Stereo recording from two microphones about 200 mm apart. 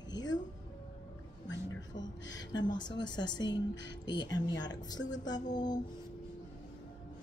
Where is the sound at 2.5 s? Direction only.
20° left (ahead or behind).